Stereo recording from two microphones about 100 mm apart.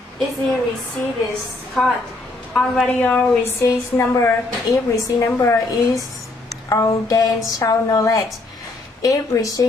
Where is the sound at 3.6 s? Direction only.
30° left (ahead or behind).